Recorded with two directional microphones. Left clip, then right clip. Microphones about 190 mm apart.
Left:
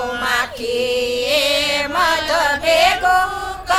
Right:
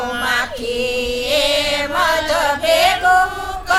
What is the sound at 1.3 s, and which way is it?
Chant, 30° left (ahead or behind).